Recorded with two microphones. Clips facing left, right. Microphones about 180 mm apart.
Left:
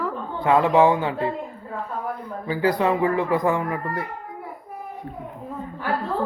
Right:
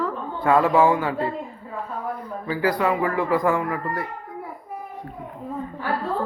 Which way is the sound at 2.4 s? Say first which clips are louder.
Left 1 dB; 25° left (ahead or behind).